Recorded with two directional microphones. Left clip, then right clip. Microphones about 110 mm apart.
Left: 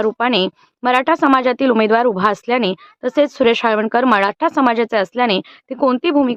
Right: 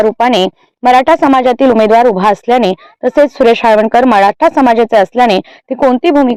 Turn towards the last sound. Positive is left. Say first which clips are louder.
# right 7 dB
turn(degrees=-30)  # may be behind; listen again after turning